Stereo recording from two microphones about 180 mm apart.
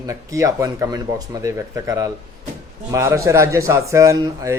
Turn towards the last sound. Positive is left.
turn(degrees=-15)  # may be behind; listen again after turning